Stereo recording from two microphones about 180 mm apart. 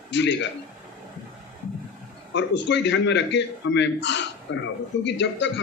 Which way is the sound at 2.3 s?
85° left.